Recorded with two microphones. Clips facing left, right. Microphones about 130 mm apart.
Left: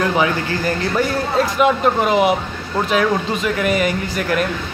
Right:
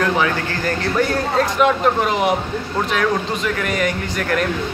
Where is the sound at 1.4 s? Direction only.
5° left (ahead or behind).